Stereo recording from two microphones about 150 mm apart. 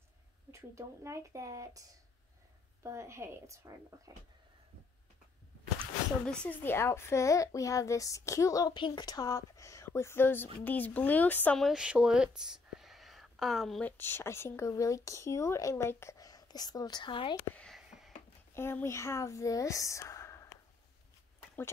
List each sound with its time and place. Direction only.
0.5 s speech: 20° right (ahead or behind)
6.2 s speech: 5° left (ahead or behind); by 17.4 s 30° left (ahead or behind)
17.6 s a sound: centre (ahead or behind)
18.5 s speech: 15° left (ahead or behind)